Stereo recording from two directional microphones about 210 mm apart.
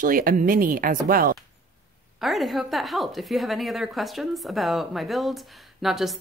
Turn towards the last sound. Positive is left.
turn(degrees=0)  # may be behind; listen again after turning